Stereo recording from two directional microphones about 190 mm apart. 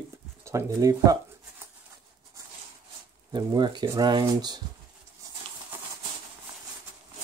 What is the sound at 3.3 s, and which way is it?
Speech, 25° right (ahead or behind).